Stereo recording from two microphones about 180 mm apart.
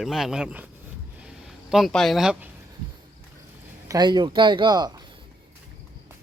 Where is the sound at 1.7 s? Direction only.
Centre (ahead or behind).